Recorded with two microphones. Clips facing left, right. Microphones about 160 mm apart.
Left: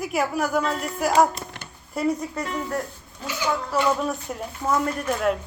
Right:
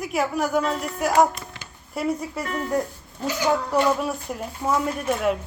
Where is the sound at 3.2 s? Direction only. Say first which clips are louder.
Right 4 dB; 40° right (ahead or behind).